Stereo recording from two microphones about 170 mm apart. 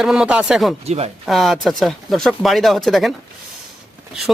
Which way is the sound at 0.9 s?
40° right (ahead or behind).